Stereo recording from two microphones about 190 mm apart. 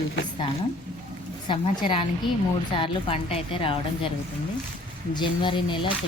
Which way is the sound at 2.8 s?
30° left (ahead or behind).